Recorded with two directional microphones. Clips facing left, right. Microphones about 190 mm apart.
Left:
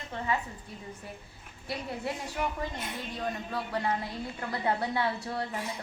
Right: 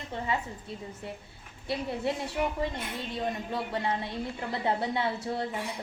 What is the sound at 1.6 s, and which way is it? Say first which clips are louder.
A woman's voice: right 4 dB; 25° right (ahead or behind).